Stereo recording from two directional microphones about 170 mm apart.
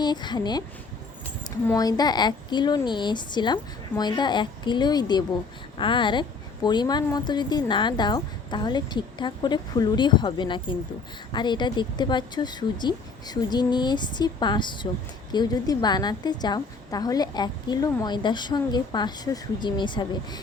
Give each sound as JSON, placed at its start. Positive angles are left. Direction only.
{"t": 0.0, "sound": "a woman's voice", "side_deg": 25}